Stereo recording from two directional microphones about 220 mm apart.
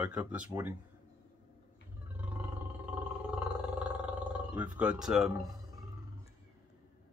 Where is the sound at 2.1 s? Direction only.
10° right (ahead or behind).